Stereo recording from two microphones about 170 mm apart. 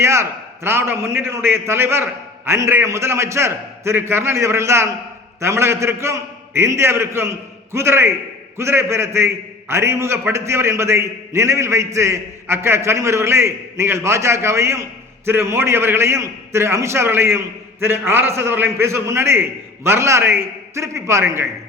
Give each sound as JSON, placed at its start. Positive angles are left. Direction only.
{"t": 0.0, "sound": "a man's voice", "side_deg": -15}